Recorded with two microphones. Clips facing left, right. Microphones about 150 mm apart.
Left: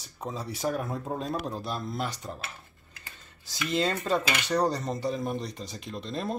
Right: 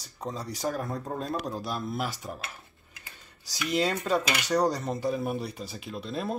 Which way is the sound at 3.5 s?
5° right (ahead or behind).